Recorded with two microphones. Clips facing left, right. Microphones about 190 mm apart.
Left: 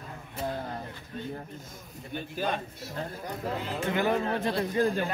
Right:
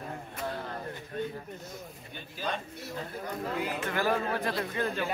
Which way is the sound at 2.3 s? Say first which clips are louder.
Left 3 dB; 50° left (ahead or behind).